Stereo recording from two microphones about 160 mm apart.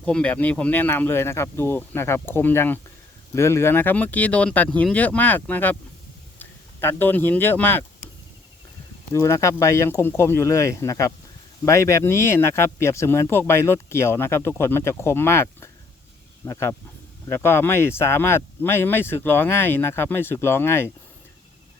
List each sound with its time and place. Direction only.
0.0 s speech: 10° left (ahead or behind)
9.1 s speech: 15° left (ahead or behind)